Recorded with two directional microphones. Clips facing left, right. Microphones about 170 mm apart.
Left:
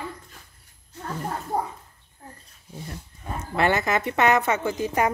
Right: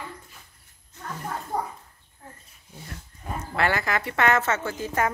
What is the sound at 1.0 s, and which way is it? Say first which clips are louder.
Gargling: left 3 dB; 30° left (ahead or behind).